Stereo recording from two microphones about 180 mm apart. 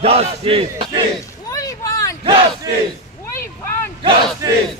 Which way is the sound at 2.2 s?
30° right (ahead or behind).